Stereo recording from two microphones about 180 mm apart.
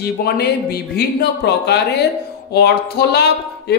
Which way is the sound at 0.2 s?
60° left (ahead or behind).